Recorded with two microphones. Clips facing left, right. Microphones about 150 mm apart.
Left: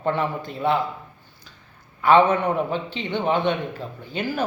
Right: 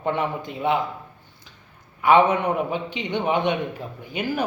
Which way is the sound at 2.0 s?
15° right (ahead or behind).